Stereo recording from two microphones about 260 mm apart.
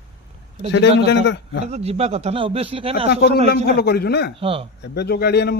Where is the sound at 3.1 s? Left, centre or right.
Left.